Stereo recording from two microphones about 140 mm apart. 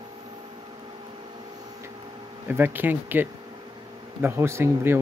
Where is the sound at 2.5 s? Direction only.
15° right (ahead or behind).